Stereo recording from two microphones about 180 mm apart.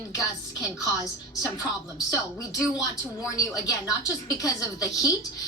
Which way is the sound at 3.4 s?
20° left (ahead or behind).